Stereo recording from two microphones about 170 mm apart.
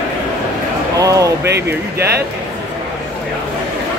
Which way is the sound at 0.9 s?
20° right (ahead or behind).